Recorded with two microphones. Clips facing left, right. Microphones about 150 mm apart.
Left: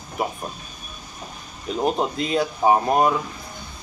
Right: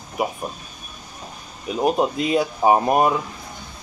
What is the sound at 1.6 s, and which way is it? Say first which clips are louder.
Speech: right 3 dB; 5° right (ahead or behind).